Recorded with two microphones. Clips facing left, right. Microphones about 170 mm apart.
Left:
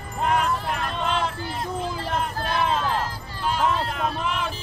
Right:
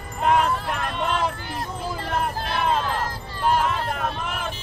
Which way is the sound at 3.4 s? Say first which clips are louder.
Right 1 dB; 50° right (ahead or behind).